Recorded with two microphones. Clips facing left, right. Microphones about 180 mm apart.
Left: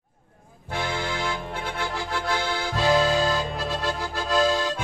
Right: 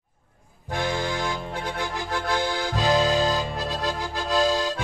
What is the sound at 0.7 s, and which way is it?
Accordion, 15° right (ahead or behind).